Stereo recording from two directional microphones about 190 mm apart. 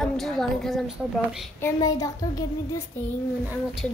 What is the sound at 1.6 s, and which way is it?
Speech, 20° left (ahead or behind).